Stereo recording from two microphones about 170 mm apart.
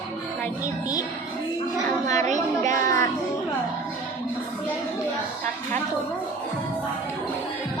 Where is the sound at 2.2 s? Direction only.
45° right (ahead or behind).